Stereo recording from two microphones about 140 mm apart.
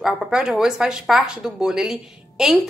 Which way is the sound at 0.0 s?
Centre (ahead or behind).